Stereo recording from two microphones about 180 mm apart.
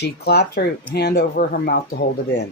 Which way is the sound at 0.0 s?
65° left (ahead or behind).